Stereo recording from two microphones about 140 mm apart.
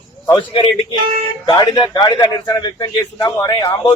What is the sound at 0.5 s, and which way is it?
Speech, 40° left (ahead or behind).